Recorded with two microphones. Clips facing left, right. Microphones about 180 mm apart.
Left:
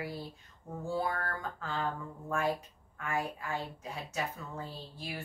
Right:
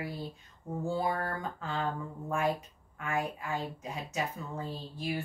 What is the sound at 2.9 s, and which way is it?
Speech, 15° right (ahead or behind).